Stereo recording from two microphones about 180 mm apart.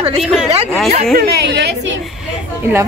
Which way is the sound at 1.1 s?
65° right (ahead or behind).